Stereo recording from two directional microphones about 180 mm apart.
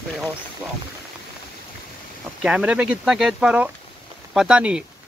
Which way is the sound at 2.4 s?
5° right (ahead or behind).